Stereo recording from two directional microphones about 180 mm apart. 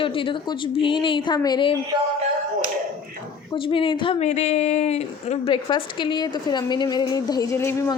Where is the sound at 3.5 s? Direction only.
30° left (ahead or behind).